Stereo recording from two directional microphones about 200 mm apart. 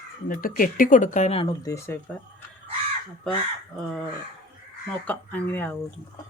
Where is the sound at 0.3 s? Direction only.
45° left (ahead or behind); by 2.0 s 15° left (ahead or behind).